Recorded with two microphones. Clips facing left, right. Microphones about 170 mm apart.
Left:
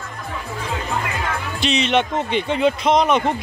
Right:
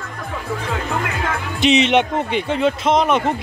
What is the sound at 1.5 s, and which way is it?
Speech, 20° right (ahead or behind).